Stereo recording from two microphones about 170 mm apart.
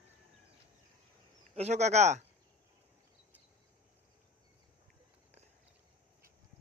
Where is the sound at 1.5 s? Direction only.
40° right (ahead or behind).